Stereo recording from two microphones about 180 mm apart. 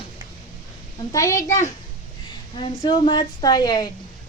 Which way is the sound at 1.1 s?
20° left (ahead or behind).